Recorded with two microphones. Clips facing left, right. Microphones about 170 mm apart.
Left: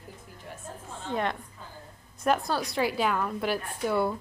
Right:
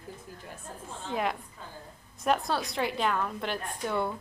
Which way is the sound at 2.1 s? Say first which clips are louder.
Left 1 dB; centre (ahead or behind).